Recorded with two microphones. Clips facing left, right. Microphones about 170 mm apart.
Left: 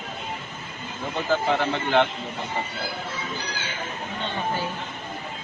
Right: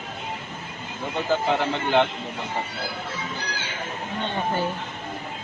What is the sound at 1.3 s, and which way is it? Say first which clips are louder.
Speech: even; 5° right (ahead or behind).